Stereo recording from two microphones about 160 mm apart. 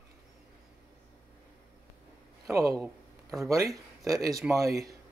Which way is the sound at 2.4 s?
20° right (ahead or behind).